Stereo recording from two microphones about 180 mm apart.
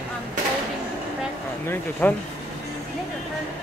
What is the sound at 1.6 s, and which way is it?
Speech, 10° left (ahead or behind).